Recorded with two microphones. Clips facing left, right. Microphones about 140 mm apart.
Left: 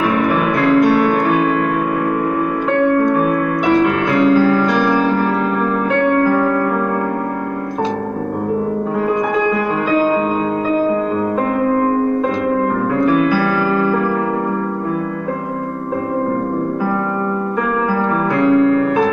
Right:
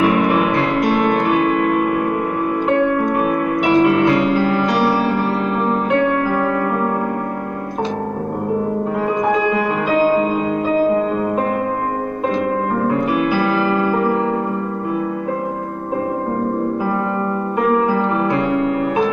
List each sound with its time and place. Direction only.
4.4 s music: 15° right (ahead or behind)
13.3 s keyboard: 15° right (ahead or behind)